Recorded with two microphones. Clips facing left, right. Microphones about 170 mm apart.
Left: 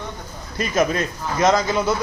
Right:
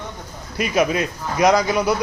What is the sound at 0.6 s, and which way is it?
Speech, 10° right (ahead or behind).